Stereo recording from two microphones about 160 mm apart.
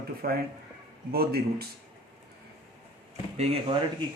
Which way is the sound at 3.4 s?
40° right (ahead or behind).